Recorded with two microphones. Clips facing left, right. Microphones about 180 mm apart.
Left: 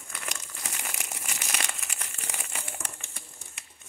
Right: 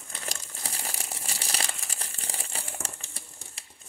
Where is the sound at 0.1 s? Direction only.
35° right (ahead or behind).